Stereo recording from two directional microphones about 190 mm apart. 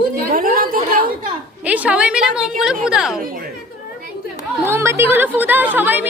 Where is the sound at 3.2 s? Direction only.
50° right (ahead or behind).